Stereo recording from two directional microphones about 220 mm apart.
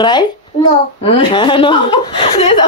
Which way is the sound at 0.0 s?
20° left (ahead or behind).